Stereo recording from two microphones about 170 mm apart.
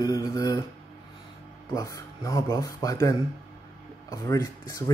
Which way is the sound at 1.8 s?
20° left (ahead or behind).